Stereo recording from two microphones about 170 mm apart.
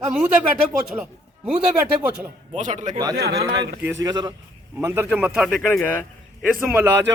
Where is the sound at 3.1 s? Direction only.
70° right (ahead or behind).